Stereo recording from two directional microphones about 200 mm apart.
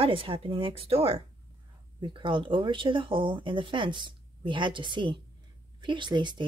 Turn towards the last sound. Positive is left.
turn(degrees=-20)  # may be behind; listen again after turning